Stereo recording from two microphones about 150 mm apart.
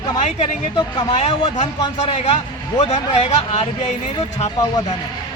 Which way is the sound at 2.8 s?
45° left (ahead or behind).